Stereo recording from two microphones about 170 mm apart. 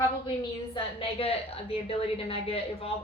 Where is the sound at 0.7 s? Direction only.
30° left (ahead or behind).